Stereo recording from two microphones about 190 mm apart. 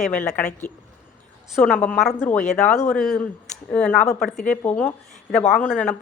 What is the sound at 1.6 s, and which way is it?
A woman's voice, 5° left (ahead or behind).